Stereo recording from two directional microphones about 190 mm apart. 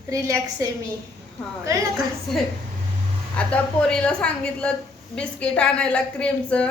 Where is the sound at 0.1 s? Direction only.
15° right (ahead or behind).